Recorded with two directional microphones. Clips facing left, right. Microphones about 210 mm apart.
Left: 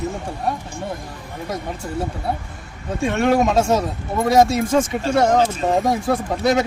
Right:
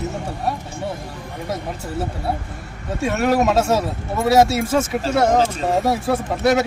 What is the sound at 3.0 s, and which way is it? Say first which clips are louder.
Speech: left 1 dB; 5° right (ahead or behind).